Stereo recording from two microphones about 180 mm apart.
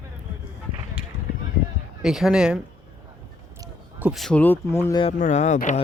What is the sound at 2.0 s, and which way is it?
Speech, 5° right (ahead or behind).